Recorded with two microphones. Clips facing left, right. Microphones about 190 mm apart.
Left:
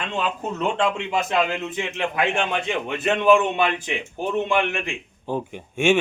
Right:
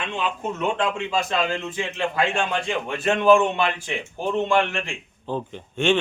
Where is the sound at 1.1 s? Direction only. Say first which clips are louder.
Left 1 dB; 20° left (ahead or behind).